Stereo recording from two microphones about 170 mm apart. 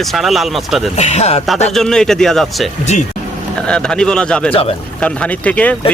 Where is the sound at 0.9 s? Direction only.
40° left (ahead or behind).